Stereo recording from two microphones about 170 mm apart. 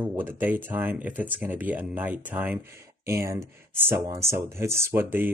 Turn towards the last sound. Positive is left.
turn(degrees=-10)  # may be behind; listen again after turning